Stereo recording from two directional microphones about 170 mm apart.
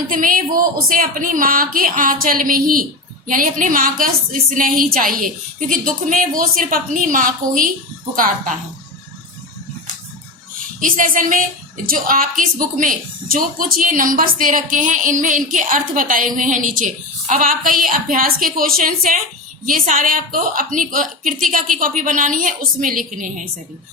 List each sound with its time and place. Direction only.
0.1 s a woman's voice: 50° right (ahead or behind)
10.8 s a woman's voice: 55° right (ahead or behind)